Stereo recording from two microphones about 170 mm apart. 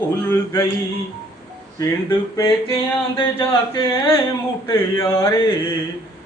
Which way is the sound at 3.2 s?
30° left (ahead or behind).